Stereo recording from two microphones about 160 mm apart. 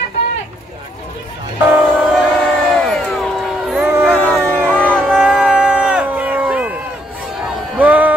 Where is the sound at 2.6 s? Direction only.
5° left (ahead or behind).